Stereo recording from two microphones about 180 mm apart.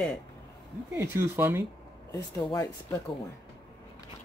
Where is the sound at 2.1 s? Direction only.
15° left (ahead or behind).